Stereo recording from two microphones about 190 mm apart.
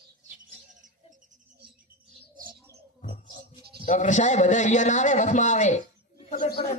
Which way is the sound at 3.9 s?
40° left (ahead or behind).